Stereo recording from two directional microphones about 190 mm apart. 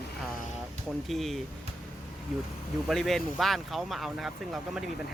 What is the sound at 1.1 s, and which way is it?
Speech, centre (ahead or behind).